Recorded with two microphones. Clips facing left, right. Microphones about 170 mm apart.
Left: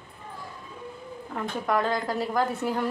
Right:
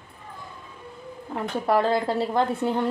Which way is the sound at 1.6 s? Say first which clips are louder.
Right 5 dB; 30° right (ahead or behind).